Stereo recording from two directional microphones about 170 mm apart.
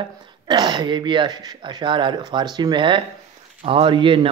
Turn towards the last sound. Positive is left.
turn(degrees=-30)  # may be behind; listen again after turning